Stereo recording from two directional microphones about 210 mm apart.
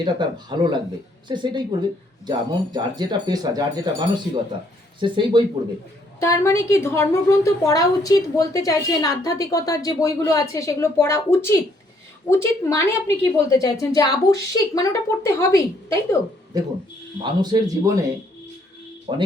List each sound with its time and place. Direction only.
0.0 s speech: 20° right (ahead or behind)
6.1 s a woman's voice: 15° left (ahead or behind)
16.5 s speech: 15° right (ahead or behind)
19.1 s speech: 20° right (ahead or behind)